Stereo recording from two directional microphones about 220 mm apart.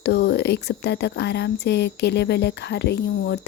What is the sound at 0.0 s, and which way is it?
Speech, 50° left (ahead or behind).